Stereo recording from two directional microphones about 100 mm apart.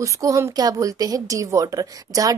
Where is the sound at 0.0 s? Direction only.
35° right (ahead or behind).